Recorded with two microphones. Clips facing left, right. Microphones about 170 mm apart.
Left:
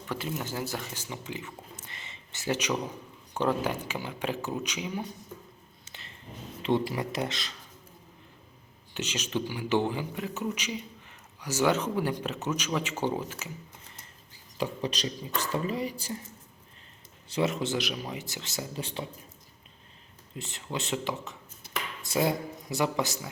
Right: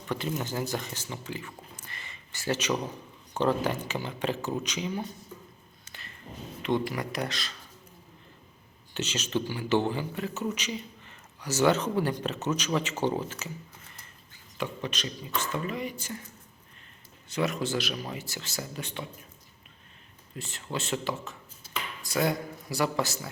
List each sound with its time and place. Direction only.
0.1 s a man's voice: 5° left (ahead or behind)
5.8 s a sound: 20° left (ahead or behind)
6.6 s speech: 30° left (ahead or behind)
8.9 s a man's voice: 10° left (ahead or behind)
14.6 s a woman's voice: 35° left (ahead or behind)
17.2 s speech: 25° left (ahead or behind)
20.3 s speech: 20° left (ahead or behind)